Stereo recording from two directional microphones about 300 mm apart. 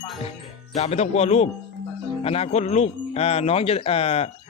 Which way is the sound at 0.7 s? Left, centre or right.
Left.